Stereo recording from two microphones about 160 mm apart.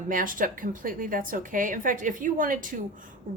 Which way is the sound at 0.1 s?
60° right (ahead or behind).